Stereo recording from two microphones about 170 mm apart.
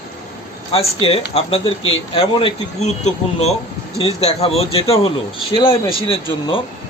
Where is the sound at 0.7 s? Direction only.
35° left (ahead or behind).